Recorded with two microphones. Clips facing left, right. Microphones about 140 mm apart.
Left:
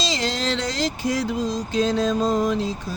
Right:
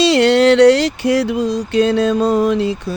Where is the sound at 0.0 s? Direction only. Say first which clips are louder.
Right 14 dB; 65° right (ahead or behind).